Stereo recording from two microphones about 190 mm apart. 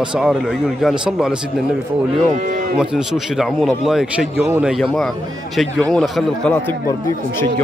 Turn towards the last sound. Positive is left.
turn(degrees=5)  # may be behind; listen again after turning